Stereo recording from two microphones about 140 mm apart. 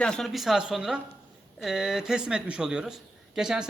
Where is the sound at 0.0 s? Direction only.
5° left (ahead or behind).